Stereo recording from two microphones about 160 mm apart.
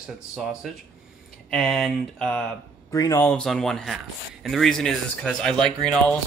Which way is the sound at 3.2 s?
5° left (ahead or behind).